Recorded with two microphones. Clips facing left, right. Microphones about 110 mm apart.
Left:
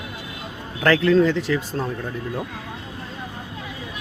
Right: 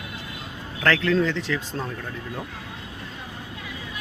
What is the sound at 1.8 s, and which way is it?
Speech, 15° left (ahead or behind).